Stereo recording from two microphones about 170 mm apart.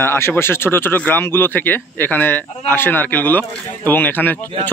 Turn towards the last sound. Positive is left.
turn(degrees=10)  # may be behind; listen again after turning